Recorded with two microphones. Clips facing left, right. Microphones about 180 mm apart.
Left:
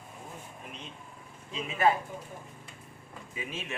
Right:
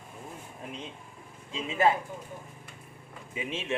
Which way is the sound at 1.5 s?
25° right (ahead or behind).